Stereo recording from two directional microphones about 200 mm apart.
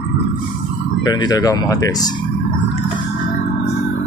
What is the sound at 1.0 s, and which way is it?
Speech, 20° left (ahead or behind).